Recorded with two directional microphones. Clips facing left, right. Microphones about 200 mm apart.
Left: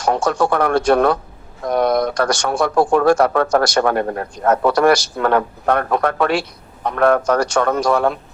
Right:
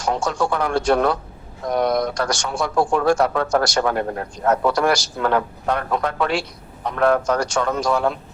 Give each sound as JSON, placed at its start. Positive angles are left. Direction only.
{"t": 0.0, "sound": "a man's voice", "side_deg": 60}